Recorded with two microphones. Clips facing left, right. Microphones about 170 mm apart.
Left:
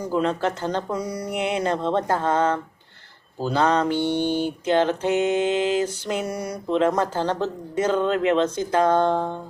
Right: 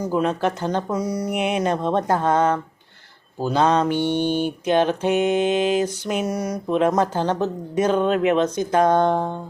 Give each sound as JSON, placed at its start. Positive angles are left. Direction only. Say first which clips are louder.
{"t": 0.1, "sound": "mantra", "louder": "even", "side_deg": -15}